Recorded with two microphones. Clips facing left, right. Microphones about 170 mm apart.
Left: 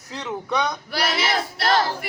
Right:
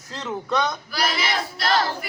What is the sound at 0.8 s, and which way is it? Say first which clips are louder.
Male singing: left 1 dB; 70° left (ahead or behind).